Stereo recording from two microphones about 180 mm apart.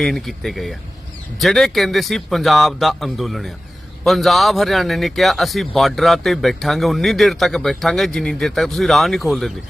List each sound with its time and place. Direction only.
0.0 s speech: centre (ahead or behind)